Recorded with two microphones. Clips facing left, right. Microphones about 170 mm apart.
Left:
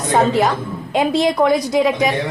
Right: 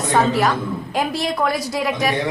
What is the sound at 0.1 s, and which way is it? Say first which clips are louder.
A woman's voice: left 3 dB; 20° left (ahead or behind).